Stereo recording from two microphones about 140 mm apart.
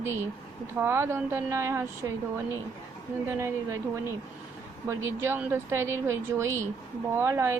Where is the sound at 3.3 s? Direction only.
20° right (ahead or behind).